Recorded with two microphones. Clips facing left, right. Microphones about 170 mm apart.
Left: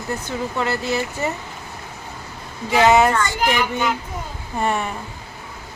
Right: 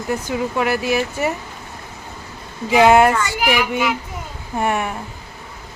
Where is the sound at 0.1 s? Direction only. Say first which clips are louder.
Right 4 dB; 10° right (ahead or behind).